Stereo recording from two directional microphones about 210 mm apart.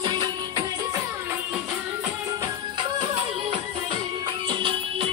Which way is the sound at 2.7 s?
25° right (ahead or behind).